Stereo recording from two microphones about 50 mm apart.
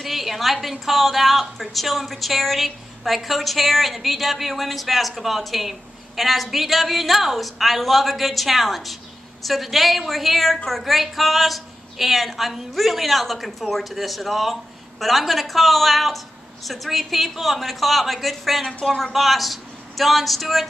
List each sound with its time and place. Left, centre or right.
0.0 s a woman's voice: centre
18.7 s speech: centre
19.1 s speech: centre